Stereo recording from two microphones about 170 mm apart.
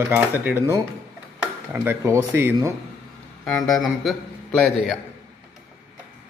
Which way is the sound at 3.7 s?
Centre (ahead or behind).